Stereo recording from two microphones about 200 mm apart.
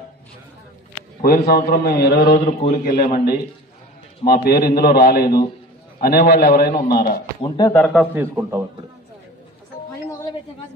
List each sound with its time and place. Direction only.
1.2 s a man's voice: 50° left (ahead or behind)
7.4 s speech: 20° left (ahead or behind)
7.7 s a man's voice: centre (ahead or behind)